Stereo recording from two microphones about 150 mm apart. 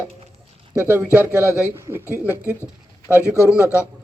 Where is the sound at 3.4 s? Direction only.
20° left (ahead or behind).